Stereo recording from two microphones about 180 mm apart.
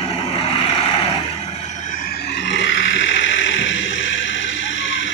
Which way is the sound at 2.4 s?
90° left.